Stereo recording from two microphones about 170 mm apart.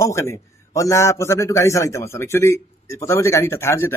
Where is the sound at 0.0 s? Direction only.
15° left (ahead or behind).